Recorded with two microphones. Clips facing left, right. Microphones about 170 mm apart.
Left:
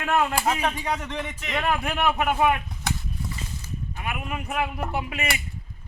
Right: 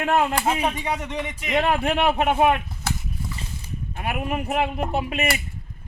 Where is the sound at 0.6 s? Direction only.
10° right (ahead or behind).